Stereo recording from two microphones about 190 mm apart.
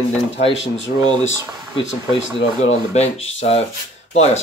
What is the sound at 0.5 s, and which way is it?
Speech, 80° left.